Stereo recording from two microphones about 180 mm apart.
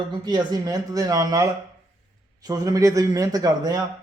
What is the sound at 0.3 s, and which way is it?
A man's voice, 20° right (ahead or behind).